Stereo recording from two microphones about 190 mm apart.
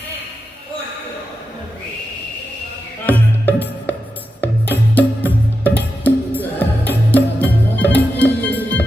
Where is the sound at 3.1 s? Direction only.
10° left (ahead or behind).